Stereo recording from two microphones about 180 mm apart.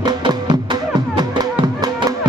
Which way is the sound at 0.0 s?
20° right (ahead or behind).